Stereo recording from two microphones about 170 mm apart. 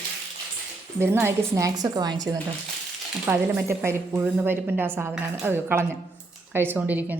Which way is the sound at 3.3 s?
15° right (ahead or behind).